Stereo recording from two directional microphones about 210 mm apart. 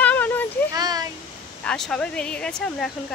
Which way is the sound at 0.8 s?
20° right (ahead or behind).